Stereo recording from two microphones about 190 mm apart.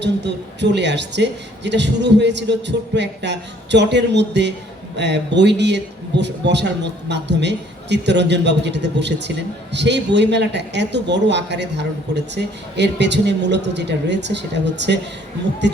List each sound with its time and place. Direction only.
0.0 s a man's voice: 65° right (ahead or behind)